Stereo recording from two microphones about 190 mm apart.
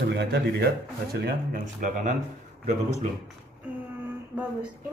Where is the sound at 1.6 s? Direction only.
40° right (ahead or behind).